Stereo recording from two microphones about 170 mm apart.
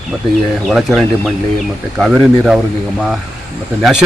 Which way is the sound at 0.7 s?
Centre (ahead or behind).